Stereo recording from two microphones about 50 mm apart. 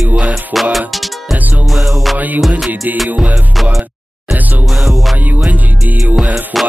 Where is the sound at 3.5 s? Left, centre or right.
Centre.